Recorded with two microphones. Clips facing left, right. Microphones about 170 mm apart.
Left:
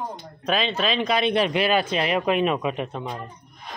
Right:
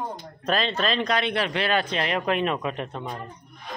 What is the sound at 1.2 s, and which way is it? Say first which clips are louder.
Speech: left 4 dB; 20° left (ahead or behind).